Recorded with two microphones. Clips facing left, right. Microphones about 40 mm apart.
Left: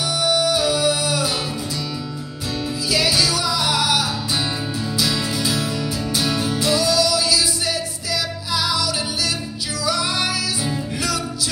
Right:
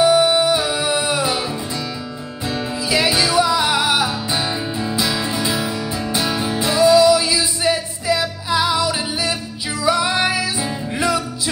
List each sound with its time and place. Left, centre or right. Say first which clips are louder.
0.0 s music: right 6 dB; right
2.9 s music: right 3 dB; right